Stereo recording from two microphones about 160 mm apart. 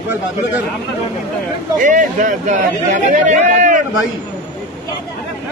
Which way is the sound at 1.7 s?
50° right (ahead or behind).